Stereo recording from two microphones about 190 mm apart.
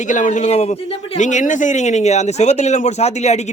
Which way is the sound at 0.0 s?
40° left (ahead or behind).